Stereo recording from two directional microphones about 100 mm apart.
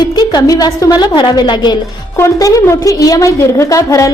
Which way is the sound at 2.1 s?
30° left (ahead or behind).